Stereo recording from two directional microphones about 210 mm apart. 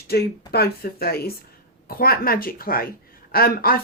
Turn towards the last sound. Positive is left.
turn(degrees=45)  # may be behind; listen again after turning